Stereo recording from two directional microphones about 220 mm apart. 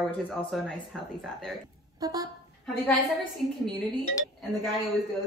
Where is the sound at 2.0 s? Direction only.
15° right (ahead or behind).